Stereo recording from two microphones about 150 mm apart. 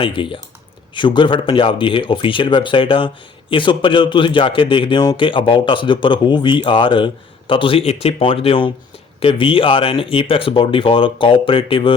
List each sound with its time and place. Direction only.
0.0 s a man's voice: 35° left (ahead or behind)